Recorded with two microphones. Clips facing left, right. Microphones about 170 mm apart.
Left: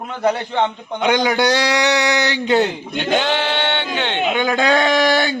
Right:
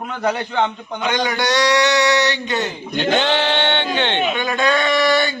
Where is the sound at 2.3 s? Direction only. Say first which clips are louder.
Left 6 dB; 65° left (ahead or behind).